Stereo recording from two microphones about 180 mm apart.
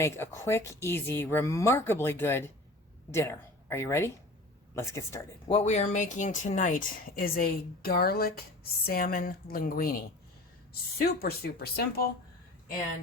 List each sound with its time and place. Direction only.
0.0 s a woman's voice: 15° left (ahead or behind)
5.5 s speech: 35° left (ahead or behind); by 12.0 s 60° left (ahead or behind)